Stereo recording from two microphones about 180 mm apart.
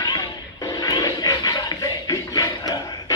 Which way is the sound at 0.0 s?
20° left (ahead or behind).